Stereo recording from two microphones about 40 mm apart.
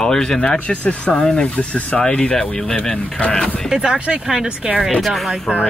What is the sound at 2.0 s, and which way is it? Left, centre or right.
Speech, centre.